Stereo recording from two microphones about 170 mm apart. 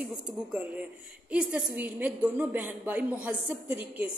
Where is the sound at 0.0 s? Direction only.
5° right (ahead or behind).